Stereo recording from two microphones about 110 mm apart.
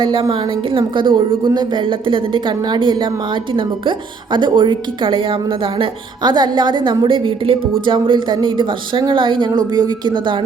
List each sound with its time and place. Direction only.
0.0 s a woman's voice: 50° right (ahead or behind)
9.5 s speech: 40° right (ahead or behind)